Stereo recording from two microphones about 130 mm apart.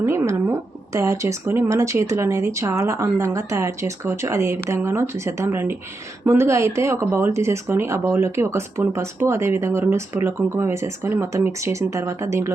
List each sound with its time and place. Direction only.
0.0 s speech: 20° right (ahead or behind)